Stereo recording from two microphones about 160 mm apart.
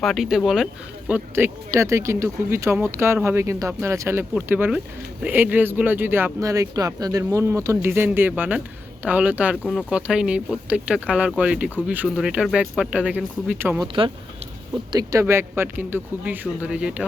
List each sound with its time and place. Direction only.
0.0 s speech: centre (ahead or behind)
13.8 s speech: 30° right (ahead or behind)
14.9 s speech: 20° right (ahead or behind)